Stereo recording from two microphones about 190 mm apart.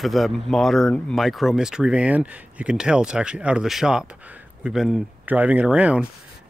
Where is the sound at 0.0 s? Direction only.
Centre (ahead or behind).